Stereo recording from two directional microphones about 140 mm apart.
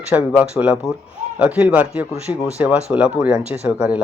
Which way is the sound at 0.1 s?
5° right (ahead or behind).